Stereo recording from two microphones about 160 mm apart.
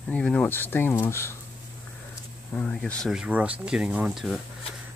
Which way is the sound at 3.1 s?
5° right (ahead or behind).